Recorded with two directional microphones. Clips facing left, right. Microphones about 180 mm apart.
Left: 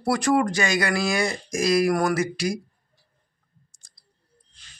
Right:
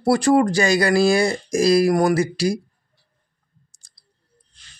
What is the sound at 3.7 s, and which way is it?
Clicking, 30° right (ahead or behind).